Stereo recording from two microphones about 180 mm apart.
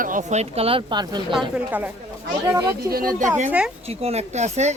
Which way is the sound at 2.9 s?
50° right (ahead or behind).